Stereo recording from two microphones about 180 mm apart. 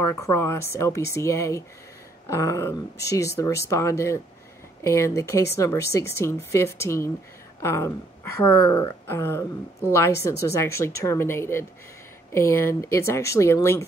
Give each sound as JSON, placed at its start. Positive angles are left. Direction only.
{"t": 0.0, "sound": "speech", "side_deg": 15}